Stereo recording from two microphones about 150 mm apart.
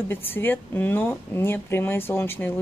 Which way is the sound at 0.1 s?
15° left (ahead or behind).